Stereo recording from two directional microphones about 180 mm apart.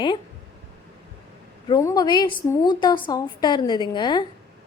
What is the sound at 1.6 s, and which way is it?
A woman's voice, 20° left (ahead or behind).